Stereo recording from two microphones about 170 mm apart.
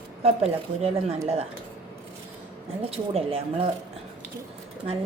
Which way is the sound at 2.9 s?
35° right (ahead or behind).